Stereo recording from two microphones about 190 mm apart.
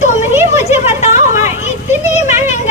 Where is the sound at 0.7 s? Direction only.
35° left (ahead or behind).